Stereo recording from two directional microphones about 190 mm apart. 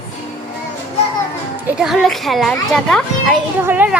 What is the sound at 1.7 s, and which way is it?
A child's voice, centre (ahead or behind).